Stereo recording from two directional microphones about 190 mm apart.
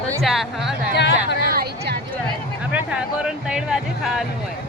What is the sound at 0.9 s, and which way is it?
Speech, 65° left (ahead or behind).